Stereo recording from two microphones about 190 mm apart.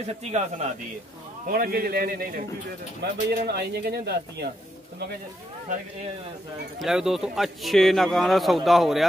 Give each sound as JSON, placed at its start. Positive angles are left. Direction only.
{"t": 0.2, "sound": "a man's voice", "side_deg": -35}
{"t": 1.5, "sound": "a man's voice", "side_deg": -50}
{"t": 6.8, "sound": "a man's voice", "side_deg": 0}